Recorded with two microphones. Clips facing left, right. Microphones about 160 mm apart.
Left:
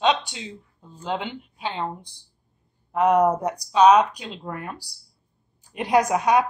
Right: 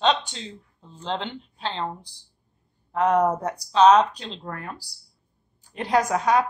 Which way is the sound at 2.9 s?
15° left (ahead or behind).